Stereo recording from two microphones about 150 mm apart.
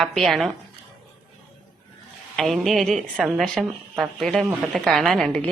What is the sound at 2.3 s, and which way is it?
A woman's voice, centre (ahead or behind).